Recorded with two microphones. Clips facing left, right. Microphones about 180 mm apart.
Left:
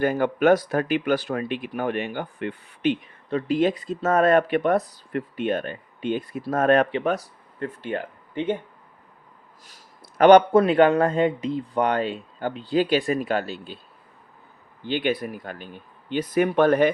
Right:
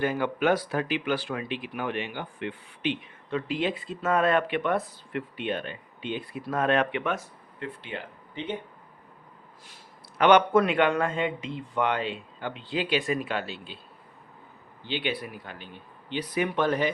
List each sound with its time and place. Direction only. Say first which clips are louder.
0.0 s speech: left 5 dB; 45° left (ahead or behind)
9.6 s a man's voice: even; 40° left (ahead or behind)
14.8 s speech: left 7 dB; 50° left (ahead or behind)